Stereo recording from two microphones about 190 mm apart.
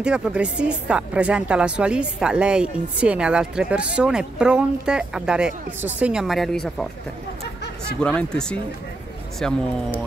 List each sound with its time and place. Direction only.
0.0 s speech: 5° right (ahead or behind)
8.0 s speech: 5° left (ahead or behind)